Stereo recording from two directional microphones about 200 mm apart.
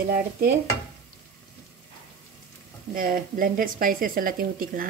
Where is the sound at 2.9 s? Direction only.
45° right (ahead or behind).